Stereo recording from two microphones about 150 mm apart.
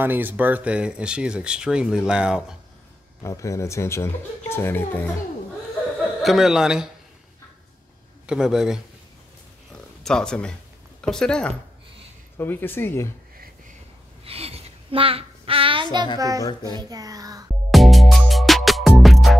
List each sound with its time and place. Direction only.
0.0 s speech: 15° right (ahead or behind)
3.2 s speech: 20° left (ahead or behind)
6.2 s a man's voice: centre (ahead or behind)
8.3 s a man's voice: 5° right (ahead or behind)
10.0 s a man's voice: 5° left (ahead or behind)
14.2 s child singing: 40° right (ahead or behind)
16.2 s a child's voice: 25° right (ahead or behind)
17.6 s music: centre (ahead or behind)